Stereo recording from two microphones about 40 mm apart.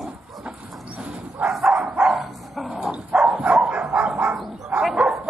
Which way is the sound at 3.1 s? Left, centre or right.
Right.